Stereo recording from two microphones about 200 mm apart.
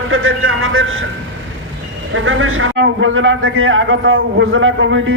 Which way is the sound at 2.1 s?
75° right (ahead or behind).